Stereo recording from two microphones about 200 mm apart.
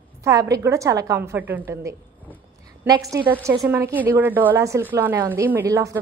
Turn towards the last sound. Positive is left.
turn(degrees=-15)  # may be behind; listen again after turning